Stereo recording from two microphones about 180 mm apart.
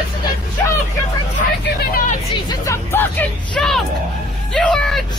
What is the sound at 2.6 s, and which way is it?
Speech, 15° left (ahead or behind).